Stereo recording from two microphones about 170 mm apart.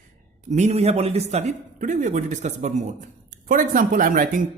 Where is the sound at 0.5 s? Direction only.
40° right (ahead or behind).